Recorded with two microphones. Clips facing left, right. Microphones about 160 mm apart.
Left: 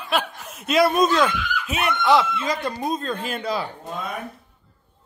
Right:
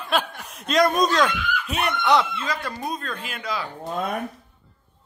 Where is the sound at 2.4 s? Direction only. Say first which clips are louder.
Left 4 dB; 20° left (ahead or behind).